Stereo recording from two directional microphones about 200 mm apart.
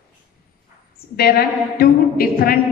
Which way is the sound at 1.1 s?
50° left (ahead or behind).